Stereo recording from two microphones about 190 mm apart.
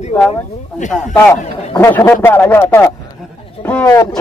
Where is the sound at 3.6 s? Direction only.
10° left (ahead or behind).